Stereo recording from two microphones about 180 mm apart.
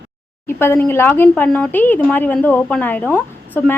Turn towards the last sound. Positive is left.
turn(degrees=10)  # may be behind; listen again after turning